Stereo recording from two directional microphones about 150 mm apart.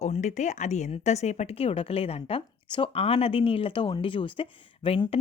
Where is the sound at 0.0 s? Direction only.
50° left (ahead or behind).